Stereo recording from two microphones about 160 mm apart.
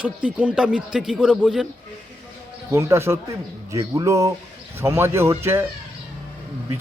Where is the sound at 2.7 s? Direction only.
15° right (ahead or behind).